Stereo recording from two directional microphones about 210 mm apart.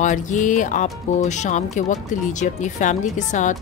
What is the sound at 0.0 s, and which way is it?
Speech, 35° left (ahead or behind).